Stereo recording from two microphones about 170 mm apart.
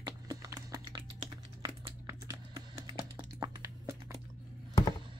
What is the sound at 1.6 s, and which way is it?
Computer keyboard, 20° right (ahead or behind).